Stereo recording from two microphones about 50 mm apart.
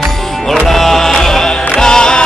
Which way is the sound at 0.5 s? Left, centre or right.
Centre.